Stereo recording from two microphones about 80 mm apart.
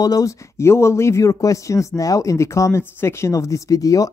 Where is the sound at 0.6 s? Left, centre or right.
Left.